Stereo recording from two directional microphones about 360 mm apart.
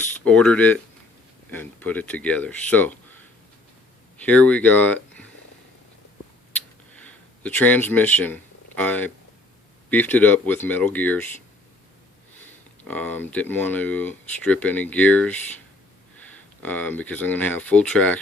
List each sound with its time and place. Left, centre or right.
0.0 s speech: centre
4.3 s speech: centre
7.1 s speech: centre
12.9 s speech: centre